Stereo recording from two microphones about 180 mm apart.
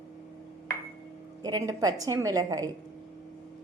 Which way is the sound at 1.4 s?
20° right (ahead or behind).